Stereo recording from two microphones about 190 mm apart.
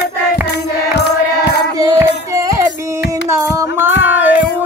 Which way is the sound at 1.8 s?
20° right (ahead or behind).